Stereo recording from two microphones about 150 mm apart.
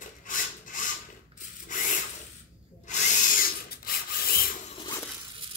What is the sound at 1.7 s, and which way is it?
Tools, 60° left (ahead or behind).